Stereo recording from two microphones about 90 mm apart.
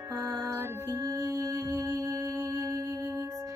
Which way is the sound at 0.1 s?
30° right (ahead or behind).